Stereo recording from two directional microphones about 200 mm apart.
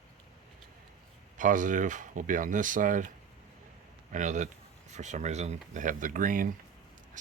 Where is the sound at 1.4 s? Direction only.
40° right (ahead or behind).